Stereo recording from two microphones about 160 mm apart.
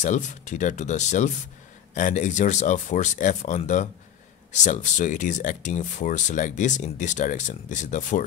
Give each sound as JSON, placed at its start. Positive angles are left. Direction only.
{"t": 0.0, "sound": "speech", "side_deg": 50}